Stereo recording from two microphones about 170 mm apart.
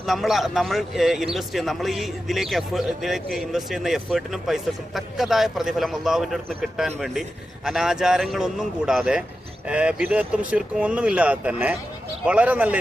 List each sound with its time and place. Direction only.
0.0 s speech: centre (ahead or behind)